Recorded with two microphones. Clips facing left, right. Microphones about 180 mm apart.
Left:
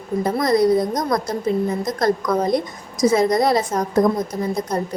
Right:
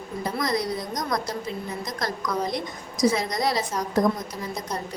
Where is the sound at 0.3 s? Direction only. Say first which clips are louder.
Left 10 dB; 55° left (ahead or behind).